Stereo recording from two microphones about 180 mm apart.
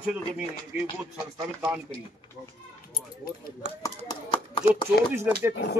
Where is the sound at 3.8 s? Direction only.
25° left (ahead or behind).